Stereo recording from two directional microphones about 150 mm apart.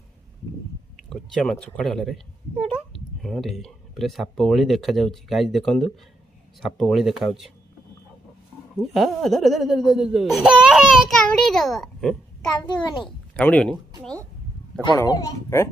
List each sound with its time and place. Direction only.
1.1 s speech: 5° left (ahead or behind)
8.7 s speech: centre (ahead or behind)
12.6 s a child's voice: 30° left (ahead or behind)
13.4 s speech: 10° left (ahead or behind)
15.0 s speech: 25° left (ahead or behind)